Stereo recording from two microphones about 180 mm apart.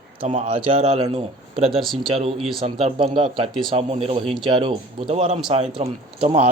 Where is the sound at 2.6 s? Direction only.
35° right (ahead or behind).